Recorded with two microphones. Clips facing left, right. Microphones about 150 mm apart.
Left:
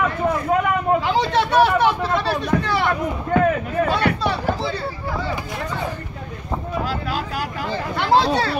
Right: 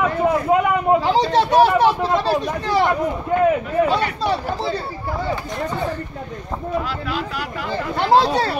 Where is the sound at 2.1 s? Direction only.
40° right (ahead or behind).